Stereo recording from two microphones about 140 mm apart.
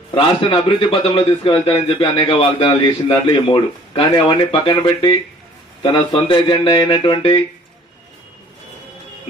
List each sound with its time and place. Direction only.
0.1 s a man's voice: 35° left (ahead or behind)